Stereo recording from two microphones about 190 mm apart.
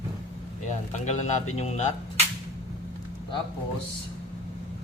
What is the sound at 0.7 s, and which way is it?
Speech, 40° left (ahead or behind).